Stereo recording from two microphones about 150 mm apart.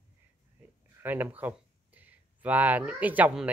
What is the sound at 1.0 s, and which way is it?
Speech, 10° right (ahead or behind).